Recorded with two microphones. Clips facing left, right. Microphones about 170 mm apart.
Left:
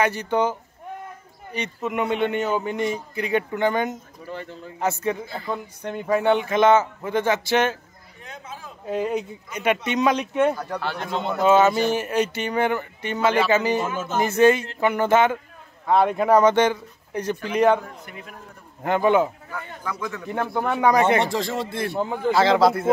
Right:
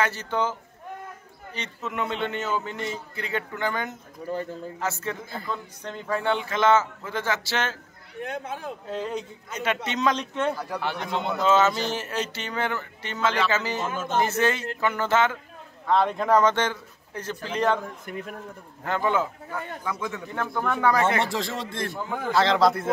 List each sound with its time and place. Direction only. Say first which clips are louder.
0.0 s speech: left 5 dB; 15° left (ahead or behind)
4.2 s a man's voice: right 5 dB; 35° right (ahead or behind)
4.7 s speech: left 8 dB; 15° left (ahead or behind)
8.2 s speech: right 7 dB; 60° right (ahead or behind)
8.8 s speech: left 8 dB; 10° left (ahead or behind)
10.6 s speech: left 1 dB; 10° right (ahead or behind)
11.4 s speech: left 5 dB; 15° left (ahead or behind)
18.1 s a man's voice: right 6 dB; 45° right (ahead or behind)
18.9 s speech: left 6 dB; 15° left (ahead or behind)
19.8 s speech: left 3 dB; 20° right (ahead or behind)
20.2 s speech: left 4 dB; 20° left (ahead or behind)
21.2 s speech: left 4 dB; centre (ahead or behind)